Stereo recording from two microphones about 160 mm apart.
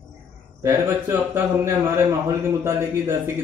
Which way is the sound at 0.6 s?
15° right (ahead or behind).